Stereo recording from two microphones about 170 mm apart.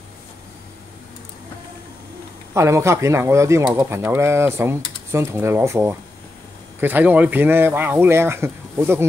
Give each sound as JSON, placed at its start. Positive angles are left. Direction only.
{"t": 2.5, "sound": "speech", "side_deg": -15}